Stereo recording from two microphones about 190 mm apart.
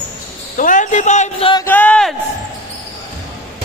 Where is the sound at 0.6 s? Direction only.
45° left (ahead or behind).